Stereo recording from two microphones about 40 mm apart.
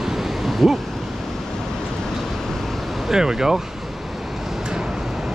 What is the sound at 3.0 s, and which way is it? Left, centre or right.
Speech, centre.